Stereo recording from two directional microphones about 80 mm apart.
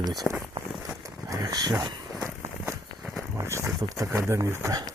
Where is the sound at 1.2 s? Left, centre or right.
Right.